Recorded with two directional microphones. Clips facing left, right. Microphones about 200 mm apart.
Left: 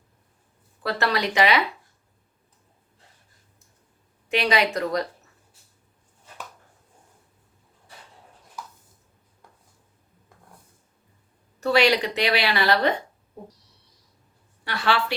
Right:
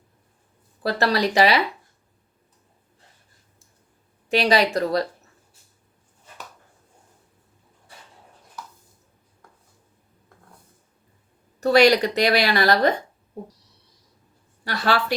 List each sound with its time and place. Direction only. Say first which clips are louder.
0.8 s speech: right 4 dB; 35° right (ahead or behind)
4.3 s speech: right 3 dB; 35° right (ahead or behind)
11.6 s a woman's voice: right 4 dB; 40° right (ahead or behind)
14.6 s speech: right 2 dB; 40° right (ahead or behind)